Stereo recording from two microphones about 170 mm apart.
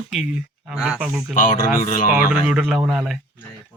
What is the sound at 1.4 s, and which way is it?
Speech, 50° left (ahead or behind).